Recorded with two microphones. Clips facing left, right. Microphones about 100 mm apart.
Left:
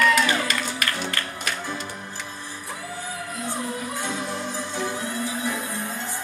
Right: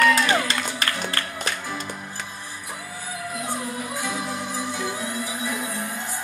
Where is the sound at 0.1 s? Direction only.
35° right (ahead or behind).